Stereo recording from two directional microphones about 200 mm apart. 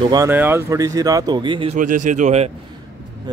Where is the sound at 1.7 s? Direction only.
40° right (ahead or behind).